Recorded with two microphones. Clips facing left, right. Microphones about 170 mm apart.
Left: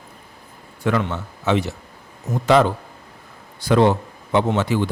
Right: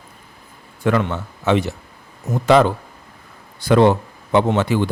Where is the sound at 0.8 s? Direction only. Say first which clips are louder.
Right 3 dB; 55° right (ahead or behind).